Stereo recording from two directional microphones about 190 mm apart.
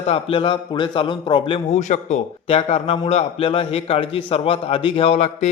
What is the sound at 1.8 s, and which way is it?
A man's voice, 40° left (ahead or behind).